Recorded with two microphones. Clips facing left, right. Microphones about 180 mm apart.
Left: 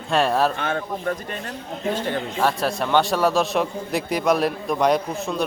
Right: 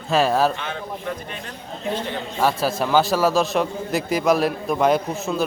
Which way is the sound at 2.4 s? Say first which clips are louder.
Right 2 dB; centre (ahead or behind).